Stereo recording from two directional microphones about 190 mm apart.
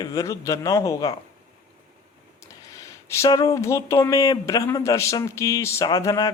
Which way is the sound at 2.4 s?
15° left (ahead or behind).